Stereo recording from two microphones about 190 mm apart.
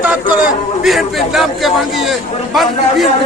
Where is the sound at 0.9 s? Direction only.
Centre (ahead or behind).